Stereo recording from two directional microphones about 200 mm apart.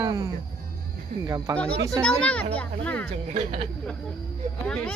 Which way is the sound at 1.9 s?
5° left (ahead or behind).